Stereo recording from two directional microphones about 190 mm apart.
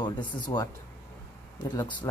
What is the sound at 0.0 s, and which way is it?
Speech, 25° left (ahead or behind).